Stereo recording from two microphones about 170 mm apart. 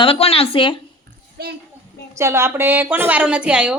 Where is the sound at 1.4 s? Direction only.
70° right (ahead or behind).